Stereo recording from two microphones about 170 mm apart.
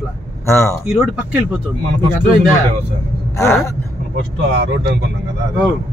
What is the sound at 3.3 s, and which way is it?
Speech, 15° left (ahead or behind).